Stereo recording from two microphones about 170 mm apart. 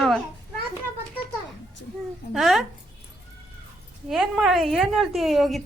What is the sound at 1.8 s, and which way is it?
Speech, 90° left.